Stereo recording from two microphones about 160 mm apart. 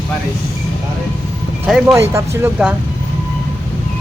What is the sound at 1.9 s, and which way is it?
Speech, 15° right (ahead or behind).